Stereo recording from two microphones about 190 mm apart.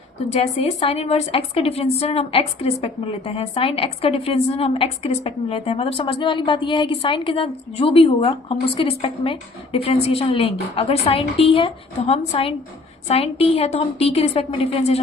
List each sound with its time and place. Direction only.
0.3 s a woman's voice: 35° left (ahead or behind)